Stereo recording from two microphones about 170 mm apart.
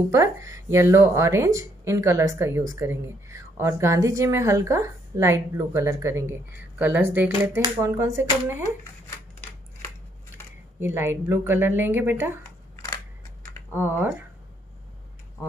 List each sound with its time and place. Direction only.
0.1 s speech: 20° right (ahead or behind)
10.8 s speech: 15° right (ahead or behind)
12.7 s camera: 20° left (ahead or behind)
13.7 s speech: 10° right (ahead or behind)